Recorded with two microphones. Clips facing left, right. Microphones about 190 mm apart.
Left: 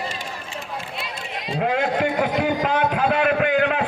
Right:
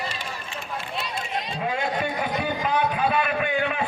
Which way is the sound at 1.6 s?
70° left (ahead or behind).